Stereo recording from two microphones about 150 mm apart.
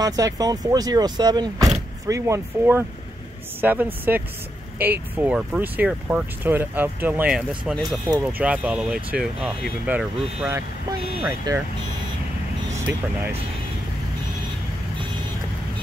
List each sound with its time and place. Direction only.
0.0 s speech: 25° right (ahead or behind)
12.7 s speech: 15° right (ahead or behind)